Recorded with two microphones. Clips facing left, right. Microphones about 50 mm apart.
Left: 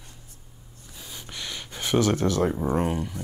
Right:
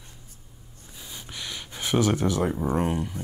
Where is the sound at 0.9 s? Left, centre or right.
Centre.